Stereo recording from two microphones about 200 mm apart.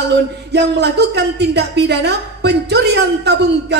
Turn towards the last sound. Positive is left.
turn(degrees=-60)  # may be behind; listen again after turning